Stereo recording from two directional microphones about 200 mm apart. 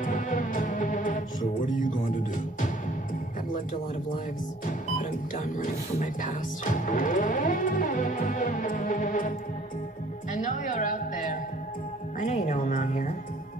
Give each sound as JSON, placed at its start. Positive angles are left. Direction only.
{"t": 0.0, "sound": "music", "side_deg": 40}
{"t": 4.6, "sound": "music", "side_deg": 40}
{"t": 10.3, "sound": "music", "side_deg": 40}